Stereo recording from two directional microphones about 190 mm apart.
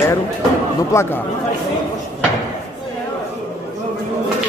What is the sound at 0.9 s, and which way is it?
Speech, 15° left (ahead or behind).